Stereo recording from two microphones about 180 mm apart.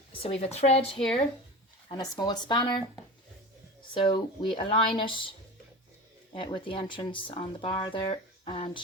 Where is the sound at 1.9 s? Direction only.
25° left (ahead or behind).